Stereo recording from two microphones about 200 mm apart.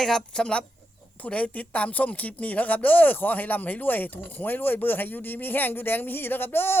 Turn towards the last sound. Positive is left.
turn(degrees=10)  # may be behind; listen again after turning